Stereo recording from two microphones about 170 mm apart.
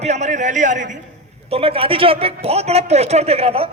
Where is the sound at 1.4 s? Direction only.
35° right (ahead or behind).